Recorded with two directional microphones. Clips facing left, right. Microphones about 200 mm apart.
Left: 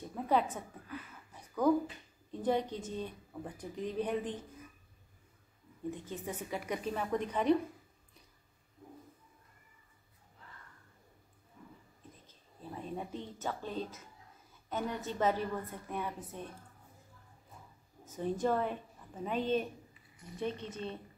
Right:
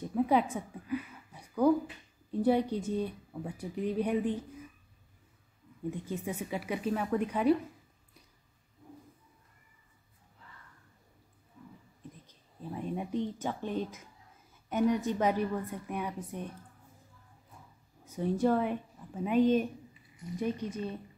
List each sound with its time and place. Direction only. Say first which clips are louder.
0.1 s a sound: right 4 dB; 10° right (ahead or behind)
2.4 s speech: right 5 dB; 10° right (ahead or behind)
5.9 s speech: right 4 dB; 10° right (ahead or behind)
12.7 s a woman's voice: right 7 dB; 15° right (ahead or behind)
18.0 s a woman's voice: right 4 dB; 10° right (ahead or behind)